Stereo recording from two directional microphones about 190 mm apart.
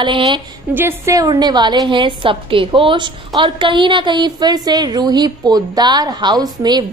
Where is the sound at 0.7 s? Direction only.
15° right (ahead or behind).